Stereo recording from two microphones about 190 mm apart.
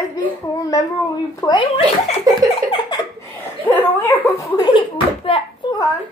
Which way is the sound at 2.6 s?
25° left (ahead or behind).